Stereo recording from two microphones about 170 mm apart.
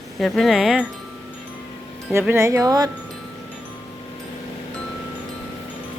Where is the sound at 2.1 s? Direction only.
15° right (ahead or behind).